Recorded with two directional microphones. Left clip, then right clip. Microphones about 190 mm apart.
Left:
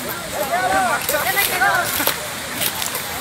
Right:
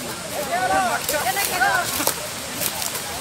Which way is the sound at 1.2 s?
55° right (ahead or behind).